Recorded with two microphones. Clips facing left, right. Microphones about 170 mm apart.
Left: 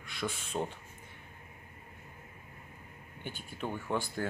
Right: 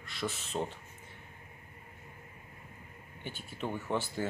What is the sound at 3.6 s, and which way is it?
Speech, centre (ahead or behind).